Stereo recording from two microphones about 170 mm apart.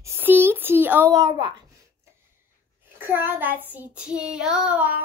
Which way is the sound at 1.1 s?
25° right (ahead or behind).